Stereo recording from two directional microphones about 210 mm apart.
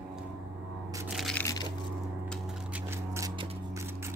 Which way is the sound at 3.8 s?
10° right (ahead or behind).